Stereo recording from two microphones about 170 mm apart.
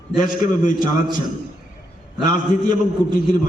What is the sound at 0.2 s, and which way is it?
Speech, 50° left (ahead or behind).